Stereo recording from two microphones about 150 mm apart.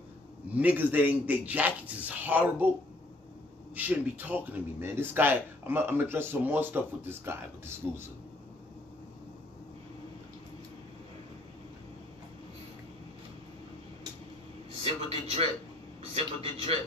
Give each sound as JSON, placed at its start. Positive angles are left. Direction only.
{"t": 0.5, "sound": "speech", "side_deg": -10}
{"t": 3.7, "sound": "speech", "side_deg": -10}
{"t": 14.8, "sound": "vehicle", "side_deg": -40}
{"t": 16.2, "sound": "a sound", "side_deg": -40}